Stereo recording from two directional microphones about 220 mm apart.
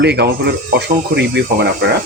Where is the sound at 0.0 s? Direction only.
50° right (ahead or behind).